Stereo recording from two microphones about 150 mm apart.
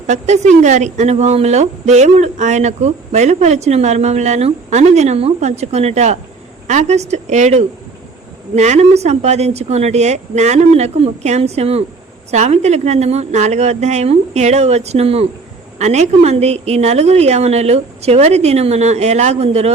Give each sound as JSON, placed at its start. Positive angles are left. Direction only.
{"t": 0.1, "sound": "a woman's voice", "side_deg": -50}